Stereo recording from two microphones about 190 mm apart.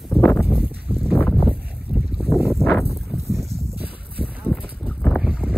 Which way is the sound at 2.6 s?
Centre (ahead or behind).